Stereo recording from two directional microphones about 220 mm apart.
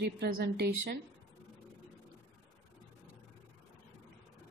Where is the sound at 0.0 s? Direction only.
50° right (ahead or behind).